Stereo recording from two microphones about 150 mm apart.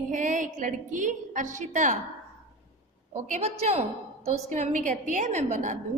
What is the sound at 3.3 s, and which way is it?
A woman's voice, 45° right (ahead or behind).